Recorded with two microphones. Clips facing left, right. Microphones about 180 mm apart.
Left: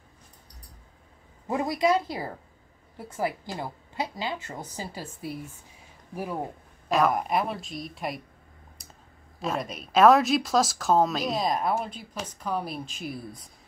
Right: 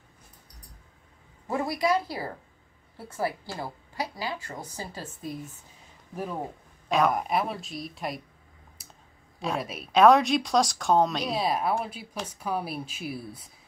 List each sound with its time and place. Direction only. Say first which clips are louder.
1.5 s a woman's voice: left 2 dB; 20° left (ahead or behind)
6.9 s speech: left 1 dB; centre (ahead or behind)
9.4 s a woman's voice: even; centre (ahead or behind)